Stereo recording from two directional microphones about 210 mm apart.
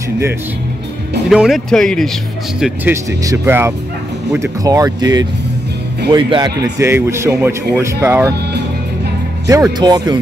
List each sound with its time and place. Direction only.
1.3 s speech: centre (ahead or behind)
2.6 s speech: 10° right (ahead or behind)
9.5 s speech: 20° right (ahead or behind)